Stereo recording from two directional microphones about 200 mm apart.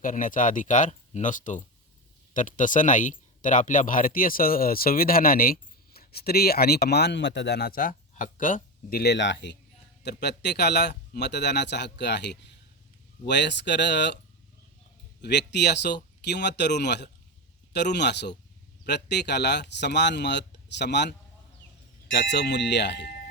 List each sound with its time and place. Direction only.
0.0 s speech: 40° left (ahead or behind); by 14.2 s 60° left (ahead or behind)
15.2 s speech: 60° left (ahead or behind)